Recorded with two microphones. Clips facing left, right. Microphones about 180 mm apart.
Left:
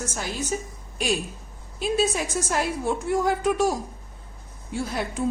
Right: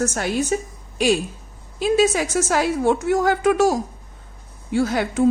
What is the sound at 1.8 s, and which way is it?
A woman's voice, 90° right.